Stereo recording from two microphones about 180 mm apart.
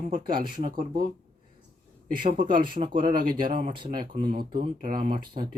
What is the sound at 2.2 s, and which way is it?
Speech, 25° right (ahead or behind).